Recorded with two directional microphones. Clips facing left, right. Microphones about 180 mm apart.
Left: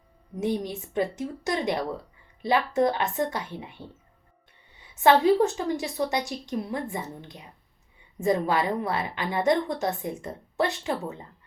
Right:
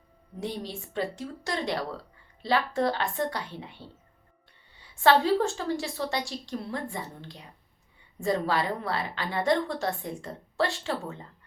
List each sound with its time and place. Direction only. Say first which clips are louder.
0.3 s a woman's voice: left 6 dB; 20° left (ahead or behind)